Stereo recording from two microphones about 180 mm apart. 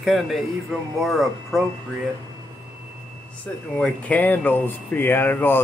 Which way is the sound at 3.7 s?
5° left (ahead or behind).